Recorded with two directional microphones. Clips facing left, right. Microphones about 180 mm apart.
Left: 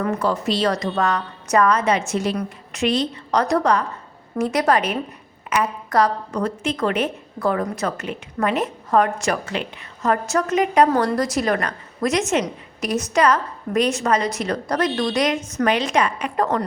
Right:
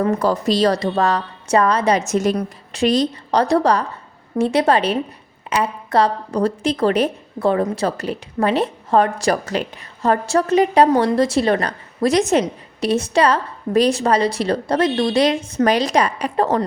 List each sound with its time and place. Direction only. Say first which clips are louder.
0.0 s a woman's voice: right 4 dB; 40° right (ahead or behind)